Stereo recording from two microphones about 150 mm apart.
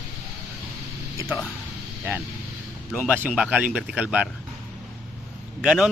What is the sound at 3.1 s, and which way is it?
Speech, 5° right (ahead or behind).